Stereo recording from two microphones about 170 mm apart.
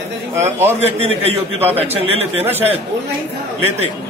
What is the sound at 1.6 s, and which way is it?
Speech, 10° right (ahead or behind).